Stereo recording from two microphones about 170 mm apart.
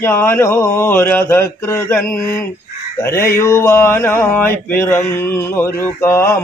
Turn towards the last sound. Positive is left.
turn(degrees=15)  # may be behind; listen again after turning